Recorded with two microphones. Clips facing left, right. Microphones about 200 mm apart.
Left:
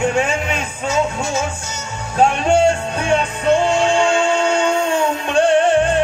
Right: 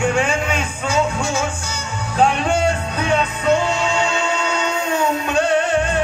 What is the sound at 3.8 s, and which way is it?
Music, 50° left (ahead or behind).